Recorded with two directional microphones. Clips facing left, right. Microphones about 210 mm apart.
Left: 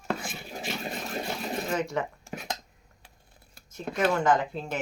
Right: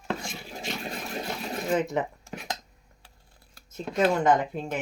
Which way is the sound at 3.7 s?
20° right (ahead or behind).